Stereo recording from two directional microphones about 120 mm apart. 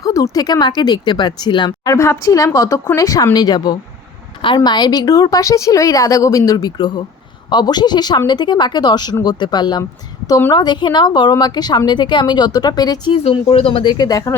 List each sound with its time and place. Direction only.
0.0 s a woman's voice: 30° left (ahead or behind)
13.1 s speech: 50° left (ahead or behind)
13.9 s speech: 30° left (ahead or behind)